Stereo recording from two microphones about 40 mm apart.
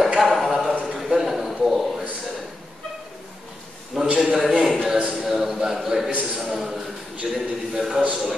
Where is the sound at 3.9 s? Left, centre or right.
Right.